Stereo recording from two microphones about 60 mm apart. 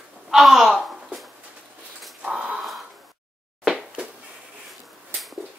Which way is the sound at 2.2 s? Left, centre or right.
Centre.